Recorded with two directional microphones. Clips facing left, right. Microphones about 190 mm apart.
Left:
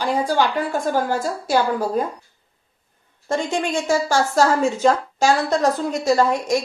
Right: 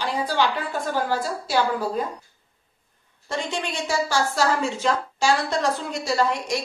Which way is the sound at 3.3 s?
45° left (ahead or behind).